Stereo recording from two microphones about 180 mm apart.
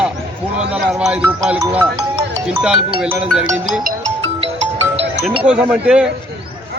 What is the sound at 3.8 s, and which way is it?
Music, 50° right (ahead or behind).